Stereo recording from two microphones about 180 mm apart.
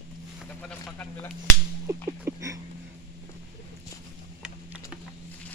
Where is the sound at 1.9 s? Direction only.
15° right (ahead or behind).